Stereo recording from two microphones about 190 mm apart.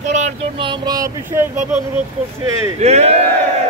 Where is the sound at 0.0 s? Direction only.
40° right (ahead or behind).